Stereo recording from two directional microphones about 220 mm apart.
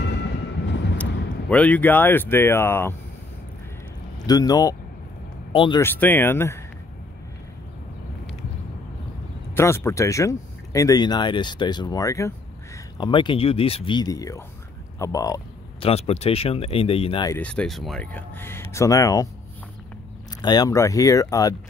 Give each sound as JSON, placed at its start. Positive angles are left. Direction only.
{"t": 0.0, "sound": "train", "side_deg": 50}
{"t": 1.5, "sound": "speech", "side_deg": 5}
{"t": 4.3, "sound": "speech", "side_deg": 15}
{"t": 5.8, "sound": "speech", "side_deg": 10}
{"t": 9.6, "sound": "speech", "side_deg": 10}
{"t": 15.0, "sound": "a sound", "side_deg": 15}
{"t": 15.9, "sound": "speech", "side_deg": 30}
{"t": 17.4, "sound": "speech", "side_deg": 5}
{"t": 20.4, "sound": "speech", "side_deg": 15}